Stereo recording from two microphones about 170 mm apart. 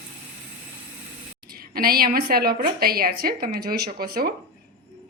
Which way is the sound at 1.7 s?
60° right (ahead or behind).